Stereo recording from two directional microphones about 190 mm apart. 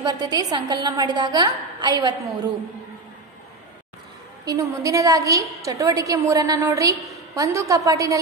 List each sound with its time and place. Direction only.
0.0 s a woman's voice: 20° right (ahead or behind)
4.5 s a woman's voice: 20° right (ahead or behind)